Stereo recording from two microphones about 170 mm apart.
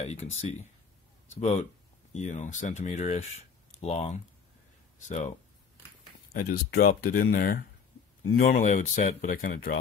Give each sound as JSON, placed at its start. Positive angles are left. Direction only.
{"t": 0.0, "sound": "speech", "side_deg": 40}
{"t": 6.3, "sound": "speech", "side_deg": 60}